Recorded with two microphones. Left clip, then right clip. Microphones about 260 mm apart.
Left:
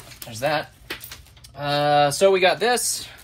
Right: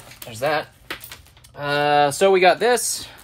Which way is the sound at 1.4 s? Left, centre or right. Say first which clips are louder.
Right 1 dB; right.